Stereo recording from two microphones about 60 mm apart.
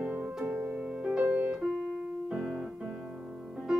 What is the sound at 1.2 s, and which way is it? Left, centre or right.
Music, right.